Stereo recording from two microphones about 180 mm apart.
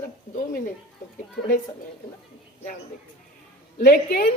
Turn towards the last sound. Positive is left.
turn(degrees=55)  # may be behind; listen again after turning